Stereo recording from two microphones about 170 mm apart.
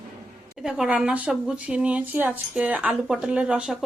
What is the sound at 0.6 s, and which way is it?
Speech, 5° right (ahead or behind).